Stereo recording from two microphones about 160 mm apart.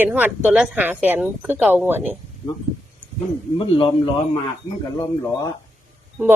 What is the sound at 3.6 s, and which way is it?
Speech, 35° left (ahead or behind).